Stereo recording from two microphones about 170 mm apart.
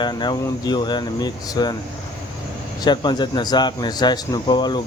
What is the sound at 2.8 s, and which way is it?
Speech, 25° left (ahead or behind).